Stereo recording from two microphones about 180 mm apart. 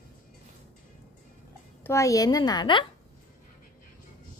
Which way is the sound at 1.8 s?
15° left (ahead or behind).